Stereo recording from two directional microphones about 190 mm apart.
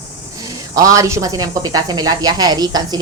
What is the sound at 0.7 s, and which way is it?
Speech, 15° right (ahead or behind).